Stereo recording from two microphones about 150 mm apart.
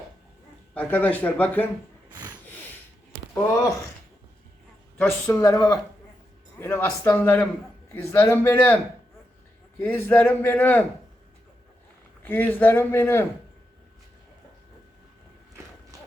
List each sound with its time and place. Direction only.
0.7 s a man's voice: 10° left (ahead or behind)
3.3 s a man's voice: 15° left (ahead or behind)
4.9 s a man's voice: 15° left (ahead or behind)
9.8 s a man's voice: 15° left (ahead or behind)
12.2 s a man's voice: 15° left (ahead or behind)